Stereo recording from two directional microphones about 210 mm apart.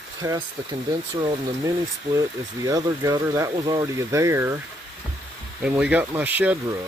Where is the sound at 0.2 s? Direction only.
20° right (ahead or behind).